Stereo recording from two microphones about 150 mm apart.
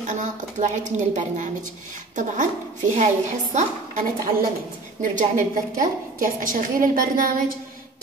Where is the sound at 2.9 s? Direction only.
55° right (ahead or behind).